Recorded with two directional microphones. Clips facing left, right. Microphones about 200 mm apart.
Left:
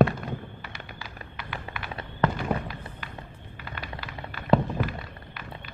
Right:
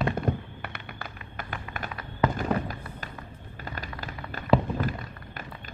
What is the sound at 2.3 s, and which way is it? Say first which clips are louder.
Fireworks: right 2 dB; 45° right (ahead or behind).